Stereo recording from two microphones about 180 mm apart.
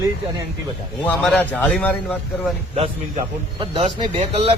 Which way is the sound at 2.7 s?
35° right (ahead or behind).